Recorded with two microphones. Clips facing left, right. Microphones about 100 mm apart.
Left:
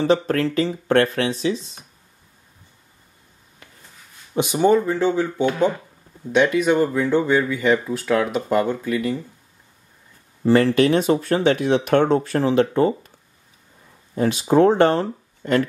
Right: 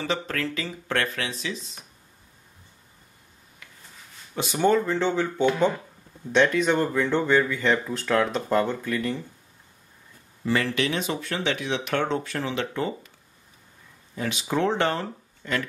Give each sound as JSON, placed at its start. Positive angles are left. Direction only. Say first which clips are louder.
{"t": 0.0, "sound": "speech", "louder": "left 10 dB", "side_deg": 35}
{"t": 4.4, "sound": "speech", "louder": "left 5 dB", "side_deg": 15}
{"t": 10.4, "sound": "speech", "louder": "left 9 dB", "side_deg": 35}
{"t": 14.1, "sound": "speech", "louder": "left 10 dB", "side_deg": 40}